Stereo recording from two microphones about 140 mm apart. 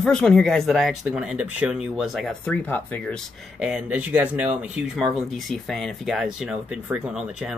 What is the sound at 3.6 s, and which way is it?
Speech, 10° right (ahead or behind).